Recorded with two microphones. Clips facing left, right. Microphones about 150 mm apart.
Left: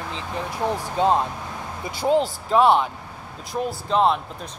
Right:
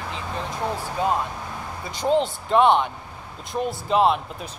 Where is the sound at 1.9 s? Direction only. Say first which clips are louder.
Left 1 dB; 5° left (ahead or behind).